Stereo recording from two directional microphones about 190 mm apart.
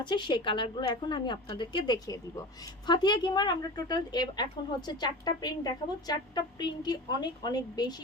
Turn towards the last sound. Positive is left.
turn(degrees=20)  # may be behind; listen again after turning